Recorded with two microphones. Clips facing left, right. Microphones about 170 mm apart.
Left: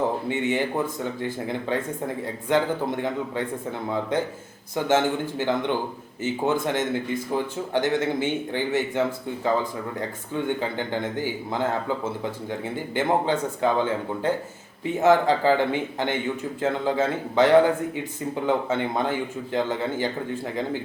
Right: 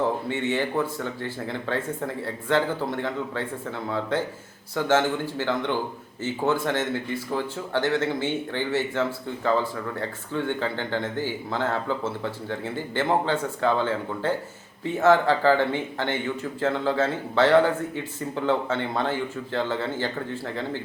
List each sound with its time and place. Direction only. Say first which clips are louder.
0.3 s speech: left 1 dB; 15° left (ahead or behind)